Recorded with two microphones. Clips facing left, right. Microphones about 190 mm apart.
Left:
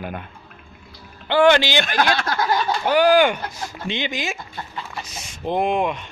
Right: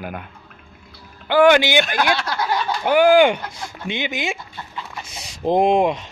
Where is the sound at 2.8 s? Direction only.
15° right (ahead or behind).